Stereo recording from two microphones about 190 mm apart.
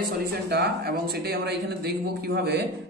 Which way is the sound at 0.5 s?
55° right (ahead or behind).